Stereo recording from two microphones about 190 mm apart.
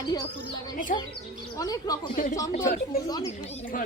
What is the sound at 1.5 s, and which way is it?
Speech, 20° left (ahead or behind).